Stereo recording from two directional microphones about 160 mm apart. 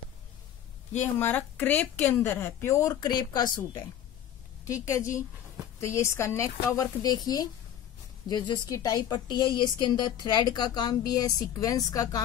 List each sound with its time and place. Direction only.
1.2 s speech: 10° left (ahead or behind); by 3.8 s 25° left (ahead or behind)
4.8 s a woman's voice: 20° left (ahead or behind)